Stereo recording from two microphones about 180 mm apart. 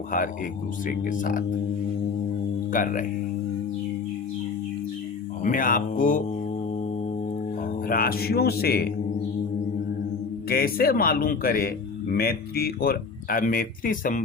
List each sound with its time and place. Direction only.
0.9 s speech: 45° left (ahead or behind)
2.7 s speech: 50° left (ahead or behind)
5.4 s speech: 50° left (ahead or behind)
7.9 s a man's voice: 55° left (ahead or behind)
10.5 s a man's voice: 55° left (ahead or behind)